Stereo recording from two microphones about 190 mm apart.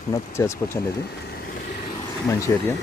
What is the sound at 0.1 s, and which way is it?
Speech, 15° left (ahead or behind).